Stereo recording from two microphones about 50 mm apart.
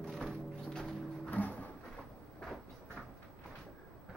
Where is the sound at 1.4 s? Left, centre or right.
Left.